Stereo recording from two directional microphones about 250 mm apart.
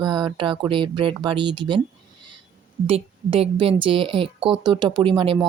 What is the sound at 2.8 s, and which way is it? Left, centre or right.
Speech, right.